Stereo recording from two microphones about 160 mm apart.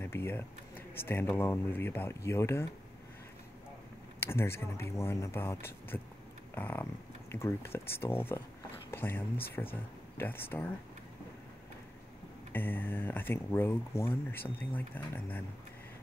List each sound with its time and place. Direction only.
0.0 s speech: 15° left (ahead or behind)
4.2 s speech: 15° left (ahead or behind)
12.5 s speech: 10° left (ahead or behind)